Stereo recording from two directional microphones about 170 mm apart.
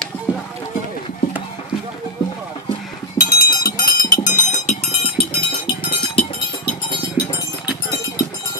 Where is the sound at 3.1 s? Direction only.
60° left (ahead or behind); by 6.2 s 35° left (ahead or behind).